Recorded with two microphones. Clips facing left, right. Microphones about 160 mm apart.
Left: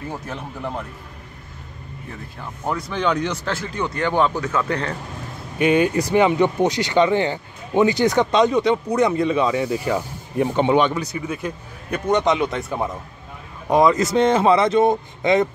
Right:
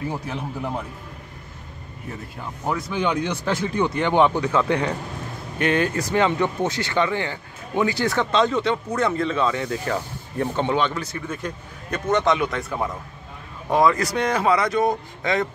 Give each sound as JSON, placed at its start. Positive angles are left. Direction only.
{"t": 2.7, "sound": "speech", "side_deg": -10}
{"t": 5.6, "sound": "speech", "side_deg": 10}